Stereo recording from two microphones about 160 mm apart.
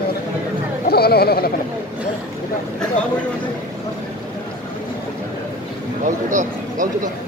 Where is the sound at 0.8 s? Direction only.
75° left (ahead or behind).